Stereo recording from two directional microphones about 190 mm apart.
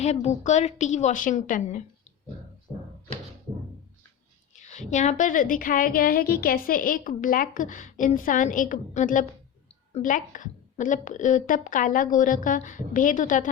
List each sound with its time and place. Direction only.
0.0 s a woman's voice: 35° left (ahead or behind)
4.5 s a woman's voice: 40° left (ahead or behind)